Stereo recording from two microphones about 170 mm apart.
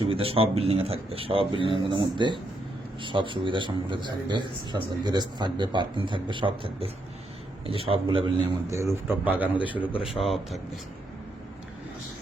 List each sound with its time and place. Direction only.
0.1 s a man's voice: 35° right (ahead or behind)
8.7 s a man's voice: 15° right (ahead or behind)